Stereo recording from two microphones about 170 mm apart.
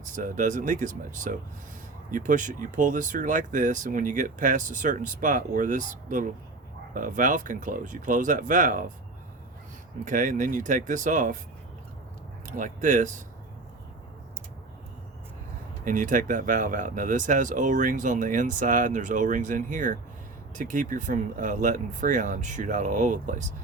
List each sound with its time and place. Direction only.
0.0 s speech: 50° right (ahead or behind)
10.0 s speech: 50° right (ahead or behind)
12.5 s speech: 50° right (ahead or behind)
15.8 s speech: 50° right (ahead or behind)